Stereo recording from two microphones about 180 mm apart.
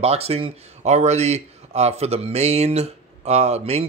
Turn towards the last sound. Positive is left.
turn(degrees=-35)  # may be behind; listen again after turning